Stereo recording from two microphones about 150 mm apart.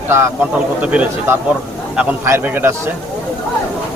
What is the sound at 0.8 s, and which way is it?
A man's voice, 10° right (ahead or behind).